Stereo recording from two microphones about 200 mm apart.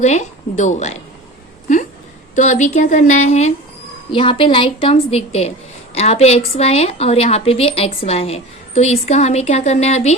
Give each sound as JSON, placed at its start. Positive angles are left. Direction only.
{"t": 0.0, "sound": "speech", "side_deg": 35}
{"t": 2.3, "sound": "a woman's voice", "side_deg": 35}